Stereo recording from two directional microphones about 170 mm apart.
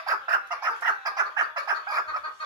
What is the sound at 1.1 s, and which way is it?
Fowl, 20° right (ahead or behind).